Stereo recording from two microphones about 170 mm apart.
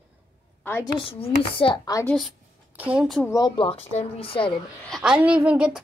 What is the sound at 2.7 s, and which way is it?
Speech, 5° right (ahead or behind).